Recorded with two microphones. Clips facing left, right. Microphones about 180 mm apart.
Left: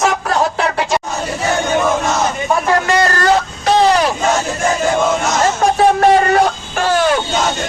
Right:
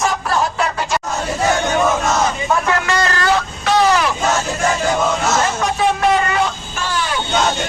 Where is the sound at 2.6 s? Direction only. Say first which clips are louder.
Left 4 dB; 35° left (ahead or behind).